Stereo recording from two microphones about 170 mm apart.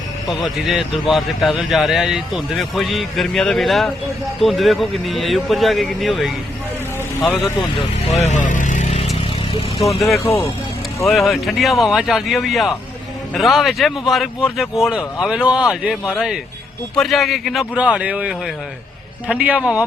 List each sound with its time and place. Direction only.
0.3 s speech: centre (ahead or behind)
8.2 s vehicle: 45° left (ahead or behind)
10.2 s speech: 15° left (ahead or behind)
11.1 s a man's voice: centre (ahead or behind)